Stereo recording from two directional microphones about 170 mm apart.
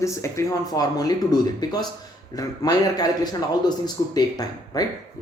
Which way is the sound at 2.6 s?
20° left (ahead or behind).